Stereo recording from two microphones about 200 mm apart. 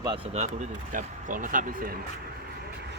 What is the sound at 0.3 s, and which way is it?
Speech, 35° right (ahead or behind).